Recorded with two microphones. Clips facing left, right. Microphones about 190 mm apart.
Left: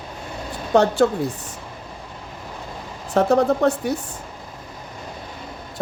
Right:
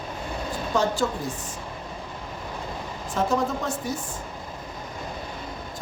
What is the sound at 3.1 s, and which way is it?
Speech, 65° left (ahead or behind).